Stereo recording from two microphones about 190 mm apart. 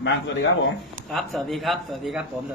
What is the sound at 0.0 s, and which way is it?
Speech, 75° left (ahead or behind).